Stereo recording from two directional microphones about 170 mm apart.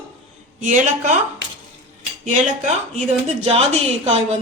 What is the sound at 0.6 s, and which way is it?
Speech, 45° right (ahead or behind).